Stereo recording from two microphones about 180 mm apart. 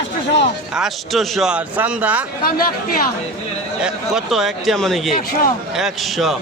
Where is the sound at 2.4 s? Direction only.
55° left (ahead or behind).